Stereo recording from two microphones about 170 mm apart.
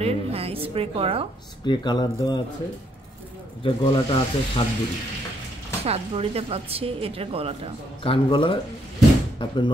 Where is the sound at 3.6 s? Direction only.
30° left (ahead or behind).